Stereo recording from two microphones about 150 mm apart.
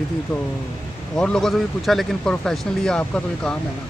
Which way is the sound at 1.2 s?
5° left (ahead or behind).